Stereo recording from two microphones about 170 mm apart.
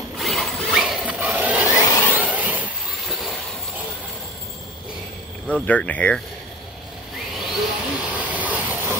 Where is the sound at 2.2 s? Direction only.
10° right (ahead or behind).